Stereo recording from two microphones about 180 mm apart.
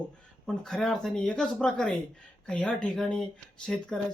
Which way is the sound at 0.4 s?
Centre (ahead or behind).